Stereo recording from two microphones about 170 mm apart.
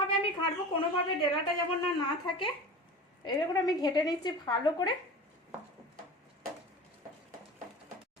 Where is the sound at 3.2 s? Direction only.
25° left (ahead or behind).